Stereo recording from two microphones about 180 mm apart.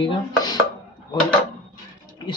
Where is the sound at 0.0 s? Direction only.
25° left (ahead or behind).